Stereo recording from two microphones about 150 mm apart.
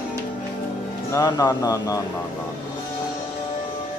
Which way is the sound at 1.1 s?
25° left (ahead or behind).